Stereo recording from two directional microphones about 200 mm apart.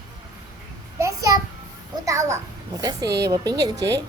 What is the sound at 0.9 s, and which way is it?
Child singing, 15° right (ahead or behind).